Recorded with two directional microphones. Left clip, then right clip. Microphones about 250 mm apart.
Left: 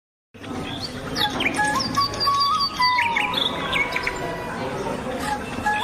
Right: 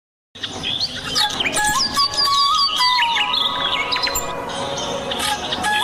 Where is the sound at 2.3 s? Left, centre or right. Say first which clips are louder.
Right 5 dB; right.